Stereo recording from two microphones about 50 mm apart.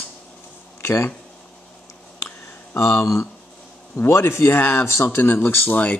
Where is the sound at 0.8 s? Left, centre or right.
Left.